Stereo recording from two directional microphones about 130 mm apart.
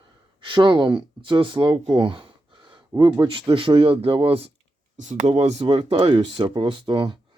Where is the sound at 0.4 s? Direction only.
40° right (ahead or behind).